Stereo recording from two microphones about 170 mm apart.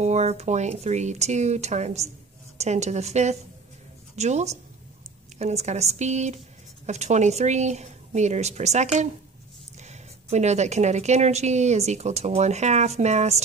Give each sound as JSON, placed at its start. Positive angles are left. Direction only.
{"t": 0.0, "sound": "a woman's voice", "side_deg": -40}